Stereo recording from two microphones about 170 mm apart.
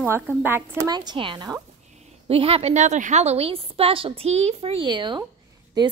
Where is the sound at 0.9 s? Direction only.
25° right (ahead or behind).